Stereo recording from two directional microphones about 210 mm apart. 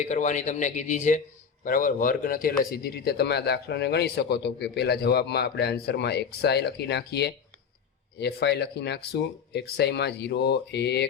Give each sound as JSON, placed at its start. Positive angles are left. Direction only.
{"t": 0.0, "sound": "a man's voice", "side_deg": 35}